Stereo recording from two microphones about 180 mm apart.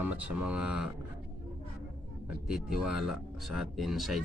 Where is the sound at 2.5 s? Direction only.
5° right (ahead or behind).